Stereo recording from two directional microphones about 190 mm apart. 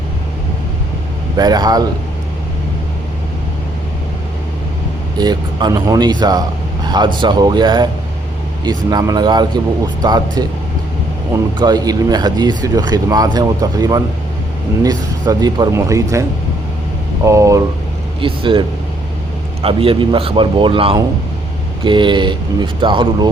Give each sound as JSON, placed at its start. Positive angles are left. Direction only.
{"t": 1.4, "sound": "speech", "side_deg": -20}
{"t": 5.1, "sound": "speech", "side_deg": -20}
{"t": 8.9, "sound": "speech", "side_deg": -20}
{"t": 11.5, "sound": "speech", "side_deg": -20}
{"t": 17.2, "sound": "speech", "side_deg": -15}
{"t": 18.2, "sound": "speech", "side_deg": -25}
{"t": 19.6, "sound": "speech", "side_deg": -30}